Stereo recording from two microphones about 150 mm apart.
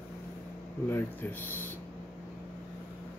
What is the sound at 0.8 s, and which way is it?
Speech, 15° left (ahead or behind).